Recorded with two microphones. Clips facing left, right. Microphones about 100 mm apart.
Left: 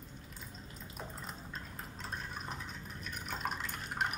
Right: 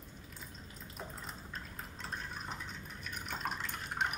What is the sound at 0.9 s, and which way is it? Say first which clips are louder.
Fill: even; centre (ahead or behind).